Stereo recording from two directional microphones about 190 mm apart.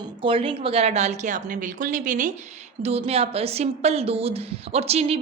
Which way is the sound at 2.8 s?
30° right (ahead or behind).